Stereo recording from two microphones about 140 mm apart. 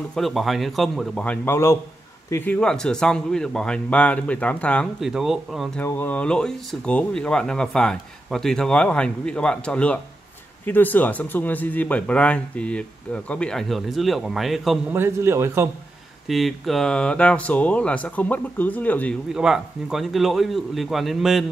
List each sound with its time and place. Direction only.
0.1 s a man's voice: centre (ahead or behind)
5.0 s a man's voice: 5° right (ahead or behind)
5.8 s speech: 15° left (ahead or behind)
15.0 s a man's voice: 20° right (ahead or behind)
16.3 s speech: centre (ahead or behind)
19.3 s a man's voice: 5° right (ahead or behind)